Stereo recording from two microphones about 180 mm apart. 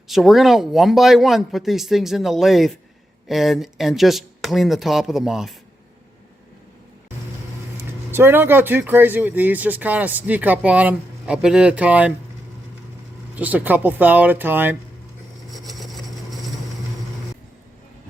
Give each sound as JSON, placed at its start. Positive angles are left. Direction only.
{"t": 0.1, "sound": "speech", "side_deg": 0}
{"t": 7.8, "sound": "speech", "side_deg": -10}
{"t": 13.3, "sound": "speech", "side_deg": -10}
{"t": 15.4, "sound": "vehicle", "side_deg": 0}